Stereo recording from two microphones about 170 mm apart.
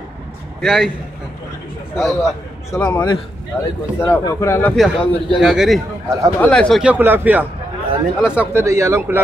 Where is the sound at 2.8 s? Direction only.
20° left (ahead or behind).